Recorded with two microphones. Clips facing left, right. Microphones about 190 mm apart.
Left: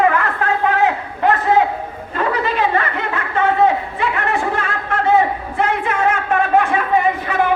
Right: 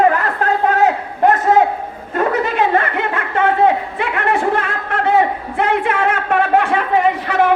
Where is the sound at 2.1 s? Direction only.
50° right (ahead or behind).